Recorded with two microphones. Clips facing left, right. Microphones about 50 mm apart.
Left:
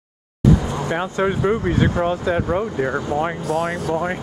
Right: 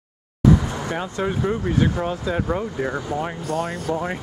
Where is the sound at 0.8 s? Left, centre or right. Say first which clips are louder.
Left 4 dB; left.